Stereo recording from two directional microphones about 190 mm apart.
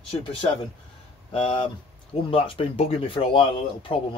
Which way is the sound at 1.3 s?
30° left (ahead or behind).